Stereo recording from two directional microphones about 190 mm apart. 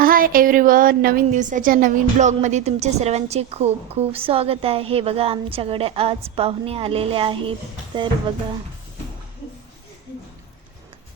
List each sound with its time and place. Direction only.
0.0 s a woman's voice: 50° right (ahead or behind); by 7.5 s 30° right (ahead or behind)